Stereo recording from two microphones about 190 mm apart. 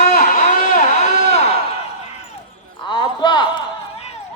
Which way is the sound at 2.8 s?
25° left (ahead or behind).